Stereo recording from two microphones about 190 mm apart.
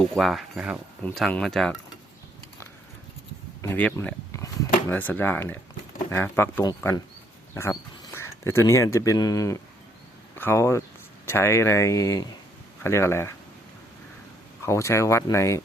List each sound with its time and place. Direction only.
0.2 s speech: centre (ahead or behind)
3.6 s speech: 10° left (ahead or behind)
14.6 s speech: 15° left (ahead or behind)